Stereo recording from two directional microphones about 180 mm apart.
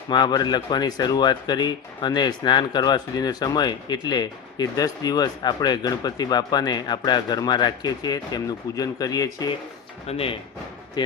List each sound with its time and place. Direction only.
0.1 s speech: 25° left (ahead or behind)
10.1 s speech: 30° left (ahead or behind)